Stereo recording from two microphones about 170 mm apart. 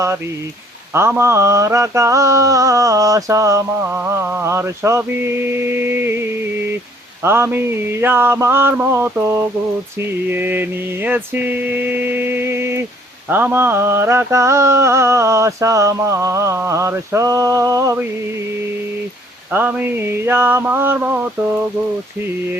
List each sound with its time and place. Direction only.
0.9 s mantra: 15° right (ahead or behind)
7.2 s mantra: 15° right (ahead or behind)
19.5 s mantra: 10° right (ahead or behind)